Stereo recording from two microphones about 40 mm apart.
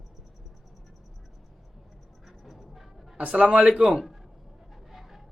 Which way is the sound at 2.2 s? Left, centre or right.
Centre.